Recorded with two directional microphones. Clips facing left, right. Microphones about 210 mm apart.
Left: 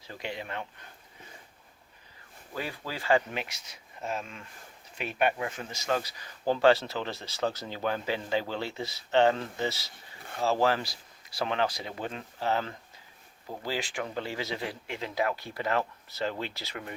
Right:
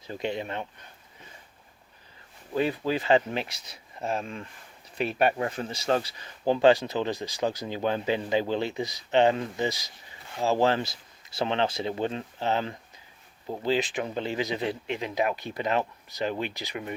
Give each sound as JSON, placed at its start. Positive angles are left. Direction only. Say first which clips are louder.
{"t": 0.1, "sound": "speech", "louder": "right 6 dB", "side_deg": -25}
{"t": 2.6, "sound": "speech", "louder": "right 10 dB", "side_deg": -20}
{"t": 3.3, "sound": "speech", "louder": "right 4 dB", "side_deg": -35}